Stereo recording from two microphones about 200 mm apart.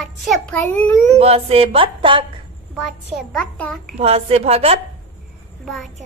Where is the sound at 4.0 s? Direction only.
30° right (ahead or behind).